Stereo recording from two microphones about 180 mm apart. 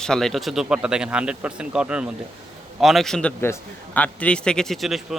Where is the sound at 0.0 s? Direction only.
5° left (ahead or behind).